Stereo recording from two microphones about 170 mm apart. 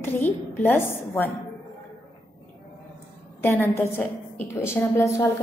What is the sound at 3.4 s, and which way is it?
A woman's voice, 15° left (ahead or behind).